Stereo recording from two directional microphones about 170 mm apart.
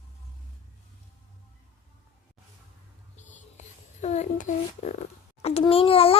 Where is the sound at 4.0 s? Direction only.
40° left (ahead or behind).